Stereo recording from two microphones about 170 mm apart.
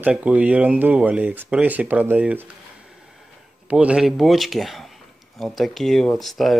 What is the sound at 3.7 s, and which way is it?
Speech, 5° right (ahead or behind).